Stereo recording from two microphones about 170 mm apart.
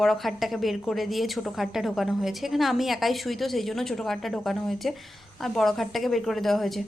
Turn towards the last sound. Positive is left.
turn(degrees=0)  # may be behind; listen again after turning